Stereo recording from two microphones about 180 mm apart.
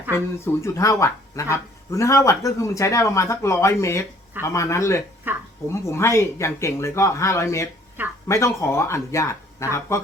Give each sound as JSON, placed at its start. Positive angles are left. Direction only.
{"t": 0.4, "sound": "speech", "side_deg": 15}
{"t": 5.3, "sound": "a sound", "side_deg": -10}
{"t": 5.8, "sound": "speech", "side_deg": 15}